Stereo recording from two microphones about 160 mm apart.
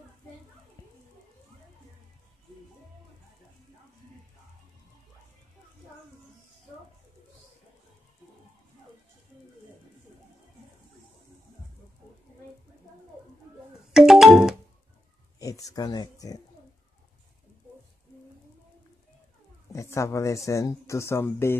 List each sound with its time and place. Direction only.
13.9 s music: centre (ahead or behind)
15.3 s speech: 20° left (ahead or behind)
19.7 s speech: 20° left (ahead or behind)